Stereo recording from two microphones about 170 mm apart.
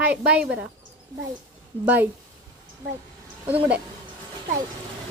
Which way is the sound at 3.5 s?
10° right (ahead or behind).